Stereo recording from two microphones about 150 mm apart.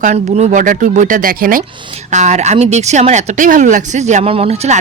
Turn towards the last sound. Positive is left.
turn(degrees=-45)  # may be behind; listen again after turning